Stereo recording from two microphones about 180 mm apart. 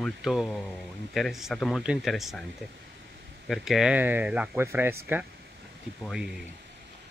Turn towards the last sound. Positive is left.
turn(degrees=0)  # may be behind; listen again after turning